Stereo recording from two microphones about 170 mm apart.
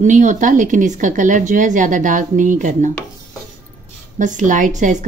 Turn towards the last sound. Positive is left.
turn(degrees=-45)  # may be behind; listen again after turning